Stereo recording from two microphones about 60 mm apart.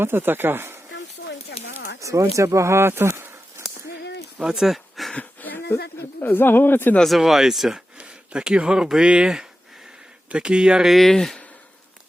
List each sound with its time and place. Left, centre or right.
0.0 s speech: right
2.0 s speech: right
4.5 s a sound: centre
5.1 s speech: left
7.2 s speech: centre
7.9 s speech: centre
10.8 s speech: centre